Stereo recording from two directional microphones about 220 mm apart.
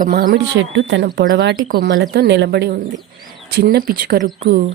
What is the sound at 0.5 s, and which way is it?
A woman's voice, 55° right (ahead or behind).